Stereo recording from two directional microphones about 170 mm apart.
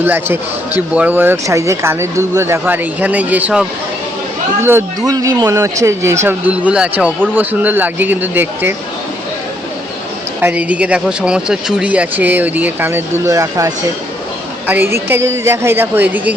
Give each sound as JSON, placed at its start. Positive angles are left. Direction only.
{"t": 0.0, "sound": "speech", "side_deg": -10}
{"t": 4.6, "sound": "speech", "side_deg": -15}
{"t": 10.4, "sound": "speech", "side_deg": -10}